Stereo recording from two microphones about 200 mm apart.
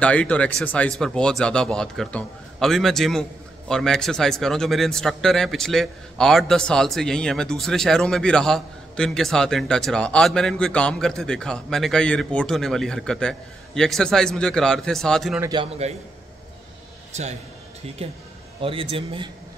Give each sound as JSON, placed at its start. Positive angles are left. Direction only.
{"t": 0.0, "sound": "speech", "side_deg": 5}
{"t": 15.4, "sound": "a man's voice", "side_deg": -25}
{"t": 17.1, "sound": "a man's voice", "side_deg": -35}